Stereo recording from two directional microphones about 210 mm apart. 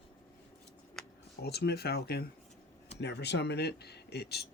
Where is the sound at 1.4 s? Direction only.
50° left (ahead or behind).